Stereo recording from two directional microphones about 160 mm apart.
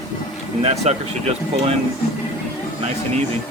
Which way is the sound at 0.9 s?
45° right (ahead or behind).